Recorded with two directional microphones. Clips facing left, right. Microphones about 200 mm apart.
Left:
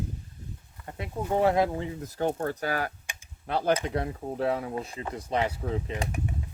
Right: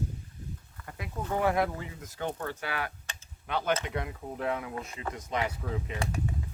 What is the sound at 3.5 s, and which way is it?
Speech, 35° left (ahead or behind).